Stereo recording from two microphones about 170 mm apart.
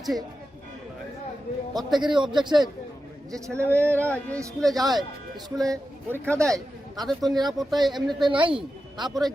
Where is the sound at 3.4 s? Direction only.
15° right (ahead or behind).